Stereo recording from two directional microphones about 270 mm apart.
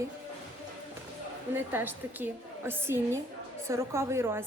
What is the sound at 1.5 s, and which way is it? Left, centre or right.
A woman's voice, centre.